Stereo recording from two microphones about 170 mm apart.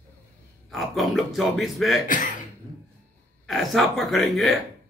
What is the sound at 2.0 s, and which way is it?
Speech, 50° left (ahead or behind).